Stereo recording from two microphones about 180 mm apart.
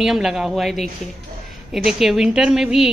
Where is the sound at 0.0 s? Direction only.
Centre (ahead or behind).